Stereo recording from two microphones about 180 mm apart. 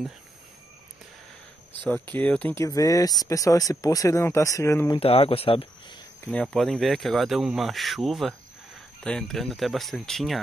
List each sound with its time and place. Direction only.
1.9 s speech: 10° left (ahead or behind)
5.0 s speech: 30° left (ahead or behind)
6.2 s speech: 5° left (ahead or behind)